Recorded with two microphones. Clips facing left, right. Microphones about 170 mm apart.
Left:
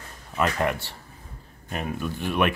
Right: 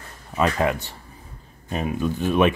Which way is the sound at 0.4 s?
20° right (ahead or behind).